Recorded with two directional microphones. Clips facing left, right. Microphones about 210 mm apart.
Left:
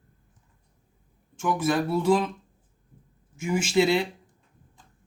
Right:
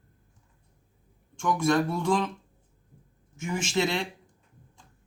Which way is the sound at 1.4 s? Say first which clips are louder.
Even; 5° left (ahead or behind).